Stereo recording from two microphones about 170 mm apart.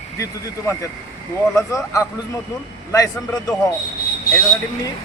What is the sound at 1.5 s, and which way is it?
A man's voice, 20° left (ahead or behind).